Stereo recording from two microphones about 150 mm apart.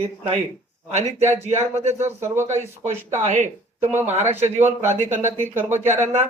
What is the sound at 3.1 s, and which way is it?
Speech, 50° right (ahead or behind).